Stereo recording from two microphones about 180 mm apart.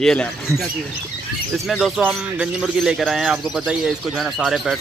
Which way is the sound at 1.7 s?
Centre (ahead or behind).